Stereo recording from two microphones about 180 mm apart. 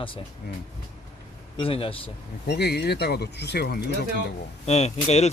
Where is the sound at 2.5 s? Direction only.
65° left (ahead or behind).